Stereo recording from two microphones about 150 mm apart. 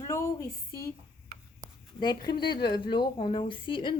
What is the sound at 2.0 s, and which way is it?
A woman's voice, 30° left (ahead or behind).